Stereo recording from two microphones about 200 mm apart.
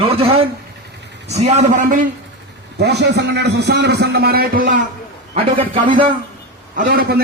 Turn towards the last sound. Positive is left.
turn(degrees=-50)  # may be behind; listen again after turning